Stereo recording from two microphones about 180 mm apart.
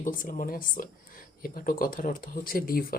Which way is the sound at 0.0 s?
50° left (ahead or behind).